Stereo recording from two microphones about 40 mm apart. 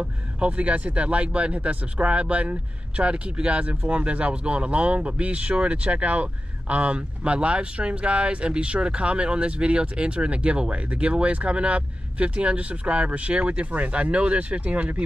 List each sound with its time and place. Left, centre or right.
0.0 s speech: right